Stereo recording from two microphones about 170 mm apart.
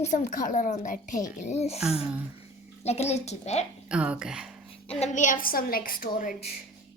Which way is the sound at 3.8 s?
5° right (ahead or behind).